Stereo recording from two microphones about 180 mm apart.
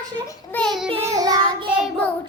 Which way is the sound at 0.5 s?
Centre (ahead or behind).